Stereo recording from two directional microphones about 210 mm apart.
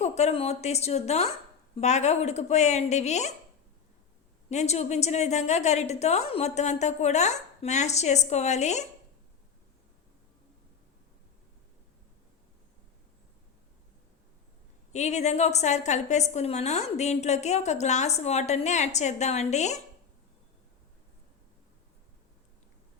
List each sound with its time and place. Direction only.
0.0 s a woman's voice: 30° left (ahead or behind)
4.4 s a woman's voice: 30° left (ahead or behind)
14.9 s a woman's voice: 35° left (ahead or behind)